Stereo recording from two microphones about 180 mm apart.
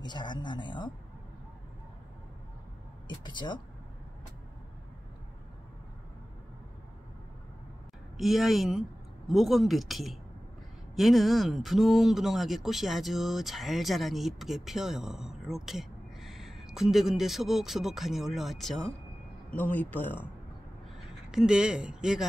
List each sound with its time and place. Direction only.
0.0 s speech: 25° left (ahead or behind)
3.1 s speech: 25° left (ahead or behind)
8.2 s speech: centre (ahead or behind)
21.3 s speech: 5° right (ahead or behind)